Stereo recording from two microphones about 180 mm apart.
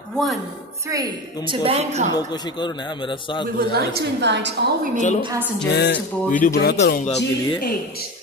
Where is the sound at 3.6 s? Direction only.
60° right (ahead or behind).